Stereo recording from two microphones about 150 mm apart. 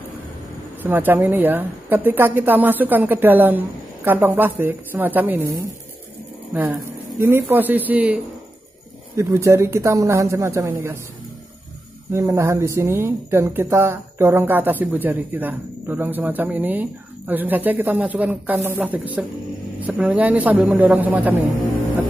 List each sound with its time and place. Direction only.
0.8 s a woman's voice: 15° right (ahead or behind)
12.1 s a woman's voice: 20° right (ahead or behind)